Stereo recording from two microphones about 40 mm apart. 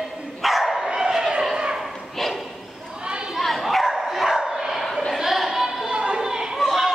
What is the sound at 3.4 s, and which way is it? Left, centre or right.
Bow-wow, centre.